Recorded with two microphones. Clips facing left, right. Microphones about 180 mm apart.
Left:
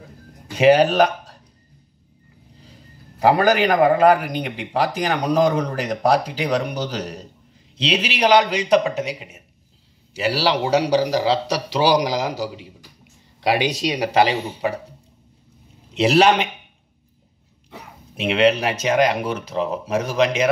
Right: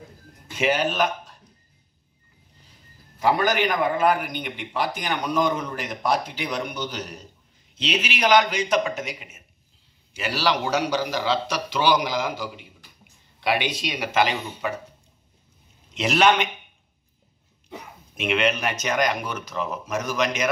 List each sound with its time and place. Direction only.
0.5 s speech: 35° left (ahead or behind)
3.2 s a man's voice: 35° left (ahead or behind)
18.1 s a man's voice: 35° left (ahead or behind)